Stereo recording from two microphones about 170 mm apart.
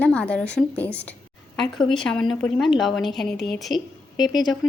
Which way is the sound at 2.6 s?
Centre (ahead or behind).